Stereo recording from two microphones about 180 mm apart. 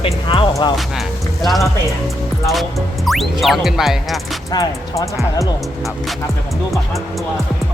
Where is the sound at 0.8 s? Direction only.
Centre (ahead or behind).